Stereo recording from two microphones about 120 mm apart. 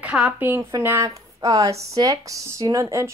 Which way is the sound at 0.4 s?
15° right (ahead or behind).